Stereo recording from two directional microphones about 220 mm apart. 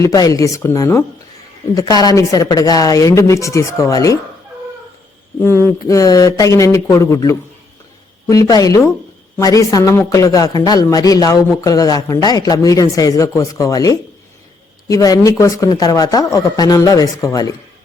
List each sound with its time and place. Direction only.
0.0 s a man's voice: 15° left (ahead or behind)
5.4 s a man's voice: 10° left (ahead or behind)